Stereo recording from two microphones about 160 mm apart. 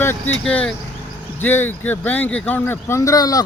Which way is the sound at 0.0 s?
15° left (ahead or behind).